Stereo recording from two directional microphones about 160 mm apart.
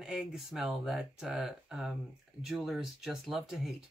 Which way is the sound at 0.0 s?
Centre (ahead or behind).